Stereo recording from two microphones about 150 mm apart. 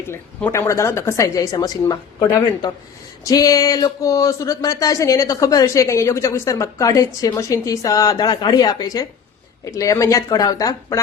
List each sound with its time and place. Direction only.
0.1 s speech: 15° left (ahead or behind)